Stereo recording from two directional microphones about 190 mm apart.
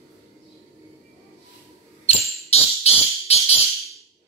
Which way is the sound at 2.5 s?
35° left (ahead or behind).